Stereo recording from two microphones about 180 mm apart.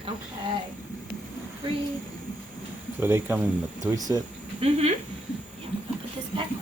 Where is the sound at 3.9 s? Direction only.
20° right (ahead or behind).